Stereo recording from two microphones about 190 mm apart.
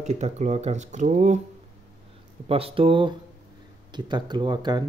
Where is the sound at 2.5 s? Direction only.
30° right (ahead or behind).